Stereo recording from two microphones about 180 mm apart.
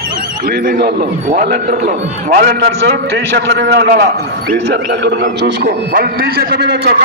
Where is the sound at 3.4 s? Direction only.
70° right (ahead or behind).